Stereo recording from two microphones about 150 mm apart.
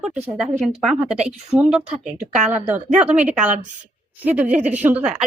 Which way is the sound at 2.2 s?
50° right (ahead or behind).